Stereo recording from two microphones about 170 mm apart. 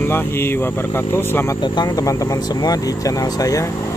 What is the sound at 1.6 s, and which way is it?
Speech, 25° left (ahead or behind).